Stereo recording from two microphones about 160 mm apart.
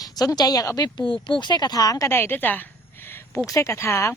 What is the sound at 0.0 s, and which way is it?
A woman's voice, 25° left (ahead or behind).